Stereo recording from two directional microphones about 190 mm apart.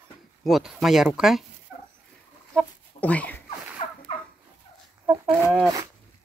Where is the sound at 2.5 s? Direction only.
5° left (ahead or behind).